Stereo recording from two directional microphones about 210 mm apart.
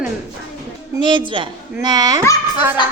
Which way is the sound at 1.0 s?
20° right (ahead or behind).